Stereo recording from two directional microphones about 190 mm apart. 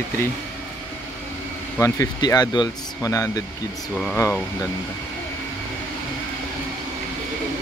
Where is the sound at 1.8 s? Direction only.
20° left (ahead or behind).